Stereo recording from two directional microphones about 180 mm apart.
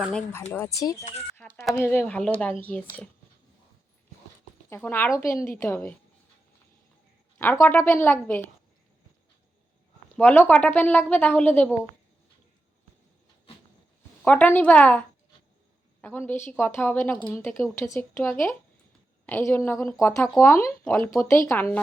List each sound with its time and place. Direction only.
0.0 s speech: 5° left (ahead or behind)
0.8 s speech: 20° left (ahead or behind)
1.4 s a woman's voice: 10° left (ahead or behind)
4.7 s a woman's voice: 10° left (ahead or behind)
7.3 s a woman's voice: 15° left (ahead or behind)
10.2 s a woman's voice: 10° left (ahead or behind)
14.3 s a woman's voice: 10° left (ahead or behind)